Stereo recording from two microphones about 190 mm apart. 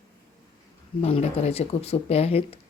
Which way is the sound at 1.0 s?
30° left (ahead or behind).